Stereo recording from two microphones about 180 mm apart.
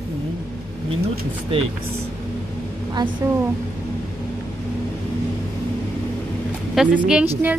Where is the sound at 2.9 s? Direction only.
25° right (ahead or behind).